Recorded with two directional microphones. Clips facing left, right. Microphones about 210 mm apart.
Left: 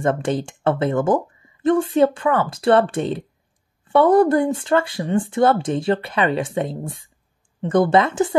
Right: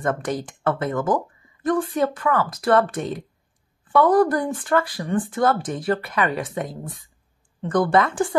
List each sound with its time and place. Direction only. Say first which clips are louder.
0.0 s speech: left 4 dB; 25° left (ahead or behind)